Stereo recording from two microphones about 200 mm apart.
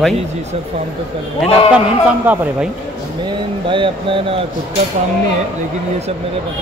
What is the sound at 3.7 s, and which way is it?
Speech, 25° right (ahead or behind).